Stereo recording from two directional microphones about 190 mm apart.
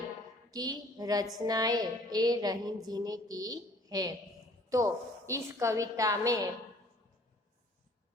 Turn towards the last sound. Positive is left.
turn(degrees=-20)  # may be behind; listen again after turning